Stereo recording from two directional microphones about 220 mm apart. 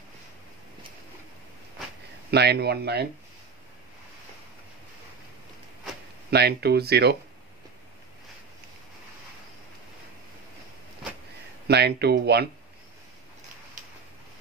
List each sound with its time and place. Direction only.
2.3 s speech: 50° right (ahead or behind)
6.3 s speech: 45° right (ahead or behind)
11.6 s speech: 50° right (ahead or behind)